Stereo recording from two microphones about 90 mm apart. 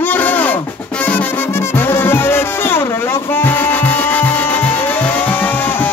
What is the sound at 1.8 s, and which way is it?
Music, 25° left (ahead or behind).